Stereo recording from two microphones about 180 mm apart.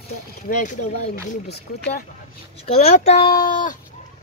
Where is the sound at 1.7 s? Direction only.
60° left (ahead or behind).